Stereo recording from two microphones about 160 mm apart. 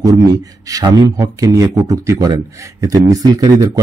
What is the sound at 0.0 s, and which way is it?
Speech, 20° right (ahead or behind).